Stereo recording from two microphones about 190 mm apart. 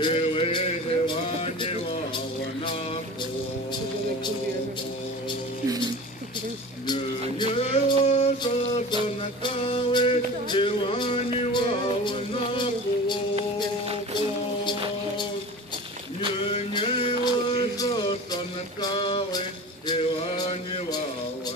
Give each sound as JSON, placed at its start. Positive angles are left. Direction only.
{"t": 0.0, "sound": "music", "side_deg": 25}
{"t": 6.9, "sound": "music", "side_deg": 30}
{"t": 16.4, "sound": "music", "side_deg": 25}
{"t": 19.9, "sound": "male singing", "side_deg": 25}